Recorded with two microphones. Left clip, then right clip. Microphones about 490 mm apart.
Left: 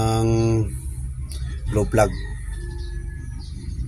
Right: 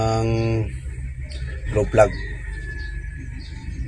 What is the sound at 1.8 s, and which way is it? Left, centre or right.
Speech, left.